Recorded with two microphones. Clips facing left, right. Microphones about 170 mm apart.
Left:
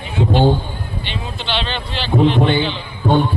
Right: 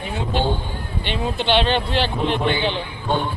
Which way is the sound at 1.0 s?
50° right (ahead or behind).